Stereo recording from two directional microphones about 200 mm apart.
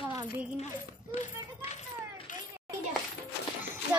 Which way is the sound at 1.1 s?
35° left (ahead or behind).